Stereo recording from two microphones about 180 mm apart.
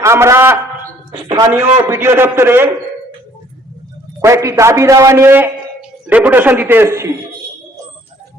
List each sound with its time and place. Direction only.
0.0 s a sound: 15° right (ahead or behind)
1.3 s a man's voice: 10° right (ahead or behind)
4.2 s a man's voice: 15° right (ahead or behind)